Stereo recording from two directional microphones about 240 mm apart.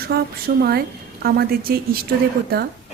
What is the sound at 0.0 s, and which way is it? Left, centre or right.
Speech, right.